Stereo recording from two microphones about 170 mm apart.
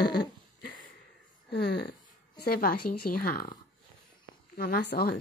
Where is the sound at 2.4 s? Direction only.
60° left (ahead or behind).